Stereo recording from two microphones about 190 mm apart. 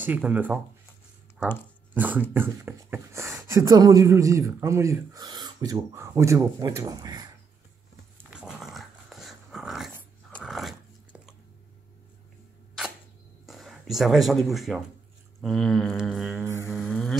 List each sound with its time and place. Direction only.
0.0 s speech: 10° right (ahead or behind)
2.0 s speech: 10° right (ahead or behind)
8.3 s dog: 5° right (ahead or behind)
13.5 s speech: centre (ahead or behind)
15.4 s didgeridoo: centre (ahead or behind)
16.4 s speech: 15° right (ahead or behind)
16.8 s a sound: 5° left (ahead or behind)